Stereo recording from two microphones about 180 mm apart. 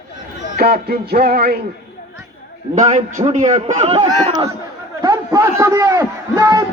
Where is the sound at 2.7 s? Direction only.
40° right (ahead or behind).